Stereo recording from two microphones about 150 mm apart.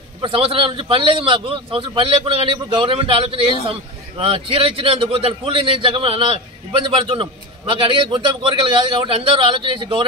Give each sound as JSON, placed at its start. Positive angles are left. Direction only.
{"t": 0.2, "sound": "a man's voice", "side_deg": -35}